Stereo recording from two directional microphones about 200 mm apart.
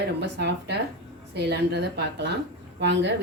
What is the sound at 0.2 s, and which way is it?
Speech, 60° right (ahead or behind).